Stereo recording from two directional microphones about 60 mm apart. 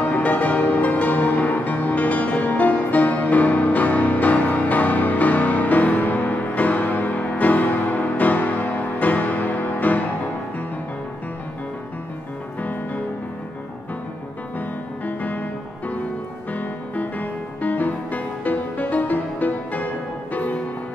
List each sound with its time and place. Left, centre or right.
0.0 s music: left
15.0 s music: left
16.5 s music: left